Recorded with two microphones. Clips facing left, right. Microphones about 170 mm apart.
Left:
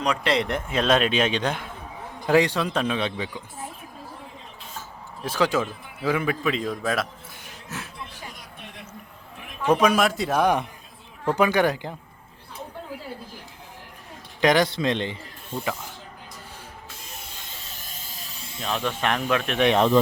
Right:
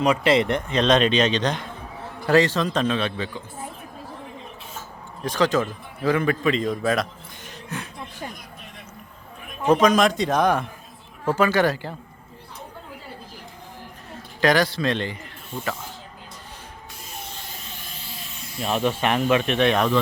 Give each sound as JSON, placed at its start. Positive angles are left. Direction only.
{"t": 0.0, "sound": "a man's voice", "side_deg": -5}
{"t": 5.2, "sound": "a man's voice", "side_deg": 5}
{"t": 9.7, "sound": "a man's voice", "side_deg": 10}
{"t": 14.4, "sound": "a man's voice", "side_deg": 20}
{"t": 17.8, "sound": "a sound", "side_deg": 45}
{"t": 18.6, "sound": "a man's voice", "side_deg": -10}
{"t": 19.5, "sound": "a man's voice", "side_deg": 20}